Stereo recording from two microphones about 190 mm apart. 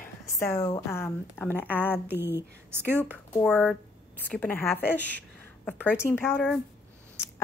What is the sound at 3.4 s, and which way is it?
A woman's voice, 5° left (ahead or behind).